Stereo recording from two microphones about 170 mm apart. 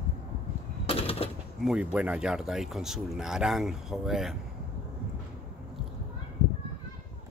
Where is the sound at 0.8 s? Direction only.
35° left (ahead or behind).